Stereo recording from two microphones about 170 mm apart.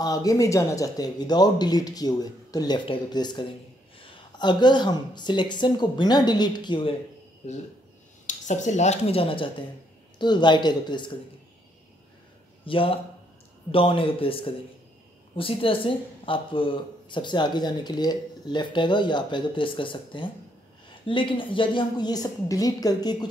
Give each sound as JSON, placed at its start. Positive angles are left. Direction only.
{"t": 0.0, "sound": "a woman's voice", "side_deg": 20}
{"t": 7.4, "sound": "a woman's voice", "side_deg": 40}
{"t": 12.6, "sound": "a woman's voice", "side_deg": 30}